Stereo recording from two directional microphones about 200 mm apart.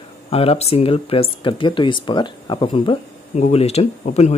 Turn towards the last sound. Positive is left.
turn(degrees=35)  # may be behind; listen again after turning